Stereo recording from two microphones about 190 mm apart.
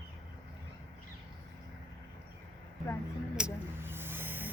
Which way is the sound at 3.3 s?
10° right (ahead or behind).